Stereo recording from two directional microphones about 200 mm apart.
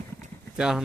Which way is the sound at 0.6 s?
5° right (ahead or behind).